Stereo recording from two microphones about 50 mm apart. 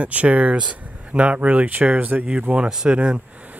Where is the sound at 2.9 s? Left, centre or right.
Right.